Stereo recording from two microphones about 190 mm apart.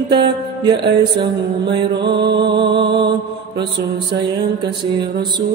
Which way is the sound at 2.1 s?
65° right (ahead or behind).